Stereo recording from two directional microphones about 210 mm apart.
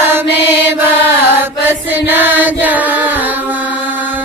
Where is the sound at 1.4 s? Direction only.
10° right (ahead or behind).